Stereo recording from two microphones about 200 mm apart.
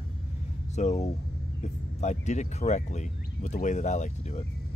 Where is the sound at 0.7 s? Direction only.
35° left (ahead or behind).